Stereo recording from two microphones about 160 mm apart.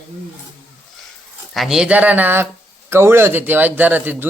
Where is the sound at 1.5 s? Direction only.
Centre (ahead or behind).